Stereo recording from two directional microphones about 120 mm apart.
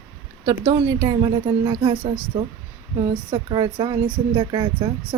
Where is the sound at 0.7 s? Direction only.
30° right (ahead or behind).